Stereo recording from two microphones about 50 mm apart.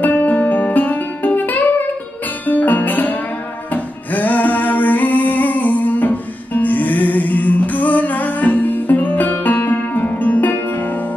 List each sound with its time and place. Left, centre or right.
0.0 s music: left